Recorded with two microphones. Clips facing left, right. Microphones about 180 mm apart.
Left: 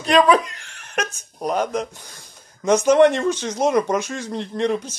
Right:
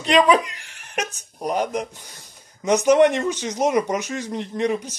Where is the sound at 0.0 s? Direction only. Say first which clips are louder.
Left 1 dB; 15° right (ahead or behind).